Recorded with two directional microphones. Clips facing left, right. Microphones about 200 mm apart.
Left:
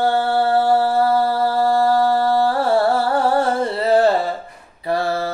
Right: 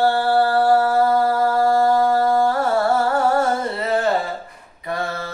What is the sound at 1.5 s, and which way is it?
Music, 35° left (ahead or behind).